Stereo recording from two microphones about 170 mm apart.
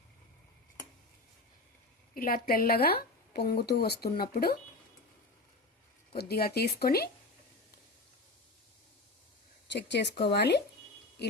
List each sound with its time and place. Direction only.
2.1 s a woman's voice: 60° left (ahead or behind)
6.1 s speech: 65° left (ahead or behind)
9.6 s speech: 90° left